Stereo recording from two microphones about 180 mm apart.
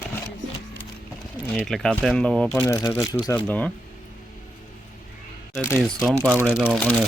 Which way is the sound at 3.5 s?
5° left (ahead or behind).